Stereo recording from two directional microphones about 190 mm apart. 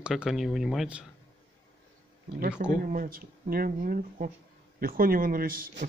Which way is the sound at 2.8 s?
45° right (ahead or behind).